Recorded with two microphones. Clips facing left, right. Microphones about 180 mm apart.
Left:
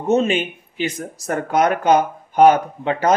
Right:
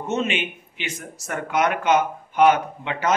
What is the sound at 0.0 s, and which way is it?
Speech, 35° left (ahead or behind).